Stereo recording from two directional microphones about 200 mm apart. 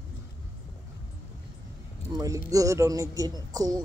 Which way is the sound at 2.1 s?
15° right (ahead or behind).